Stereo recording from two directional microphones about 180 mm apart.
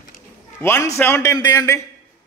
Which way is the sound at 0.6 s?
15° left (ahead or behind).